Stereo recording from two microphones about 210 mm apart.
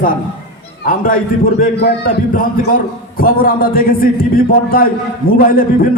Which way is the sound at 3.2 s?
45° left (ahead or behind).